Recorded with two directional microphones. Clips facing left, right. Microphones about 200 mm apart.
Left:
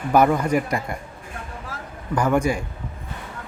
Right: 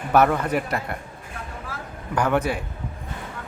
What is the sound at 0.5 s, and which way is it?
Speech, 5° right (ahead or behind).